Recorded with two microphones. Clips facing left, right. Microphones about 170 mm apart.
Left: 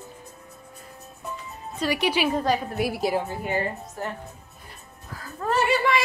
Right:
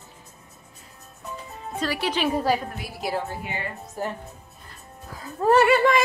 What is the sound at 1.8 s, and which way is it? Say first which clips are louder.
Speech: left 2 dB; 15° left (ahead or behind).